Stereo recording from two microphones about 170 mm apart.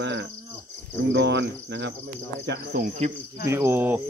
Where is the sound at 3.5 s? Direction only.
15° right (ahead or behind).